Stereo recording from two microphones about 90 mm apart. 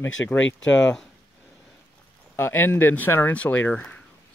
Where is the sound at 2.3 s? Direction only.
25° left (ahead or behind).